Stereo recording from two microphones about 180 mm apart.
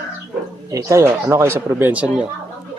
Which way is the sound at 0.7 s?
15° right (ahead or behind).